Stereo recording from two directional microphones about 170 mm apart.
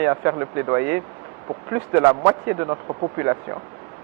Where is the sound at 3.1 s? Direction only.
20° right (ahead or behind).